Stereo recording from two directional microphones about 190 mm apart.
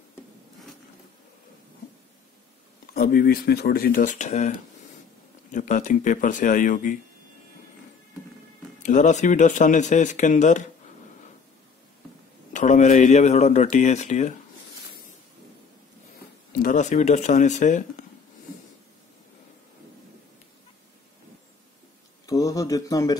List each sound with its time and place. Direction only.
2.9 s speech: 50° left (ahead or behind)
8.8 s speech: 40° left (ahead or behind)
12.5 s speech: 40° left (ahead or behind)
16.6 s speech: 40° left (ahead or behind)
22.2 s a sound: 15° left (ahead or behind)